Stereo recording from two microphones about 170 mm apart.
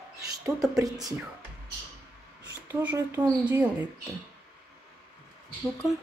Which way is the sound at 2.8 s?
10° right (ahead or behind).